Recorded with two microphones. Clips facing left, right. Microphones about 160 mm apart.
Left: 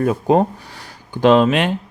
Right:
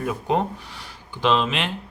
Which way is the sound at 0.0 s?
40° left (ahead or behind).